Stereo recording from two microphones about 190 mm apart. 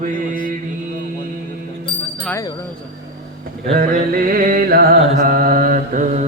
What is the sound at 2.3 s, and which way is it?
Speech, 15° left (ahead or behind).